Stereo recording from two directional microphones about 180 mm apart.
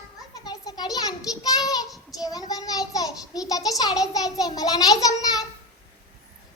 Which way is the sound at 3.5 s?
20° left (ahead or behind).